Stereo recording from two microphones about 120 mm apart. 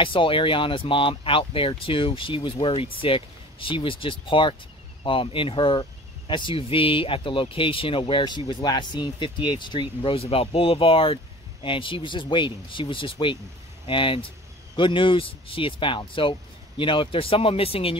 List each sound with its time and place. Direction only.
0.0 s speech: 45° left (ahead or behind)